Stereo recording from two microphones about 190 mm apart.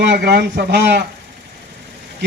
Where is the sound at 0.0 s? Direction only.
60° right (ahead or behind).